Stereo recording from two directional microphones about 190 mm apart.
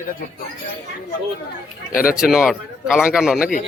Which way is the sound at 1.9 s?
50° left (ahead or behind).